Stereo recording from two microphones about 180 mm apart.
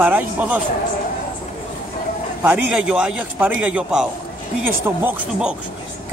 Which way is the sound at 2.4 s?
5° right (ahead or behind).